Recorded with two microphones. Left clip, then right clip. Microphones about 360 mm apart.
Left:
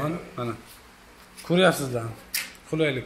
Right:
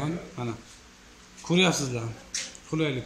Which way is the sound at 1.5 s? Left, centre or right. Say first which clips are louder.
Left 4 dB; centre.